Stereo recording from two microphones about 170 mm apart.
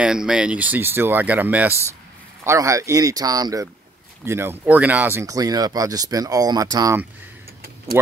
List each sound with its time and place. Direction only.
0.0 s speech: 5° right (ahead or behind)